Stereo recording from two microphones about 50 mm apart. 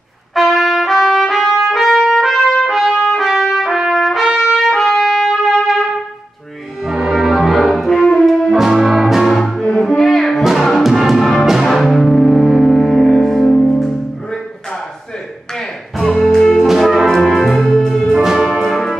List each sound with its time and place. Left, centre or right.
0.3 s trumpet: centre
6.8 s music: centre
9.4 s music: centre
11.4 s brass instrument: centre
15.5 s music: centre
16.6 s brass instrument: centre
18.1 s music: centre
18.5 s music: centre